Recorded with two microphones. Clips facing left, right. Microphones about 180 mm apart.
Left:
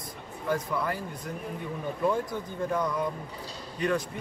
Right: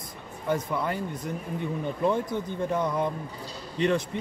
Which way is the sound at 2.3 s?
20° right (ahead or behind).